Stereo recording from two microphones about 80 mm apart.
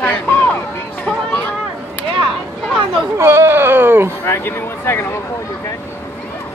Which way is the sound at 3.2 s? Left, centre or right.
Right.